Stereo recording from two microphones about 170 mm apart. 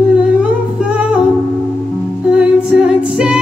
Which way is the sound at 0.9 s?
5° right (ahead or behind).